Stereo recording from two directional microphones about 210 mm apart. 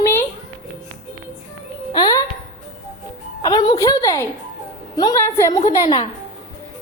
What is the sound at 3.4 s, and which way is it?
A woman's voice, 20° left (ahead or behind).